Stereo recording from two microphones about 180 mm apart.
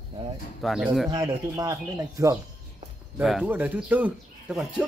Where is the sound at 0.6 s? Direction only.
Centre (ahead or behind).